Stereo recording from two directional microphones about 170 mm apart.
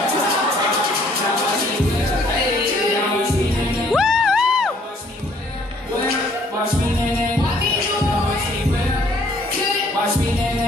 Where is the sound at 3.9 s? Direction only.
Centre (ahead or behind).